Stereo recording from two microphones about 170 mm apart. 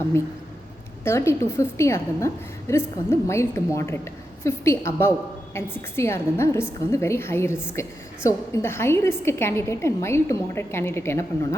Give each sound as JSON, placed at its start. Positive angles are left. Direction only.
{"t": 1.0, "sound": "a woman's voice", "side_deg": 15}